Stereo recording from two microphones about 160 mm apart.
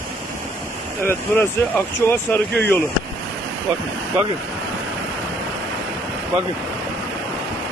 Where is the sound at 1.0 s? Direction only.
15° left (ahead or behind).